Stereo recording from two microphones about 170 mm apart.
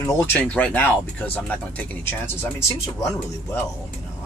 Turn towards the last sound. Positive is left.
turn(degrees=15)  # may be behind; listen again after turning